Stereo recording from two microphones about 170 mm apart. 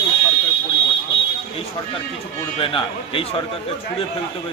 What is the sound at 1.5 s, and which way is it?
A man's voice, 35° left (ahead or behind).